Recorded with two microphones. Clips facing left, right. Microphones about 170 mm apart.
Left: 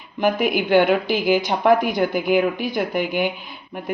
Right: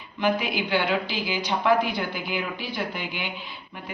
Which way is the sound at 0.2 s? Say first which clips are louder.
Left 5 dB; 50° left (ahead or behind).